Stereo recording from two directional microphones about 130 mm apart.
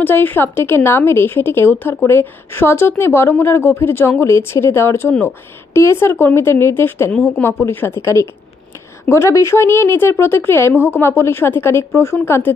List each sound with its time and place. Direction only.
0.0 s a woman's voice: 15° left (ahead or behind)